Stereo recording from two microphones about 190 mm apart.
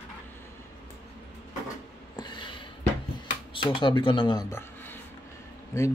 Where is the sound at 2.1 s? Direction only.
25° left (ahead or behind).